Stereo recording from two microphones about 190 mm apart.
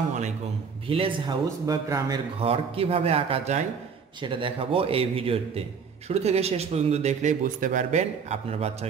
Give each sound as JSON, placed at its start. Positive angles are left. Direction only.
{"t": 0.8, "sound": "a man's voice", "side_deg": -30}
{"t": 2.4, "sound": "a man's voice", "side_deg": -30}